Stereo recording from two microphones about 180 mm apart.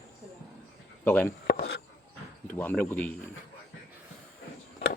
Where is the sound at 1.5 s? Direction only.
60° left (ahead or behind).